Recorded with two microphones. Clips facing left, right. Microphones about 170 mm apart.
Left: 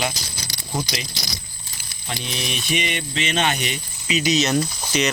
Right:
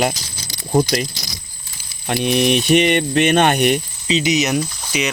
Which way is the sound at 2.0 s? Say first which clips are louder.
Right 13 dB; 60° right (ahead or behind).